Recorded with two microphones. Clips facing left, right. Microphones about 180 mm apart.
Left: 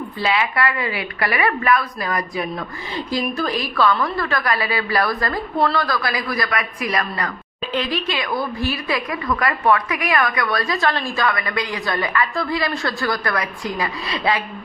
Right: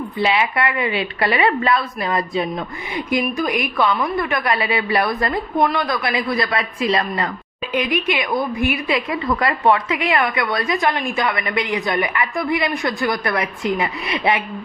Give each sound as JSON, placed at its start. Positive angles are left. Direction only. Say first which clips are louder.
{"t": 0.2, "sound": "a woman's voice", "louder": "right 2 dB", "side_deg": -25}